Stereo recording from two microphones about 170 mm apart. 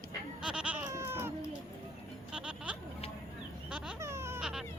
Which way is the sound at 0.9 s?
15° right (ahead or behind).